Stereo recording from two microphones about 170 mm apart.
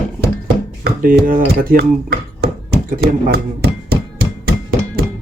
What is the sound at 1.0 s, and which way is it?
Speech, 55° right (ahead or behind).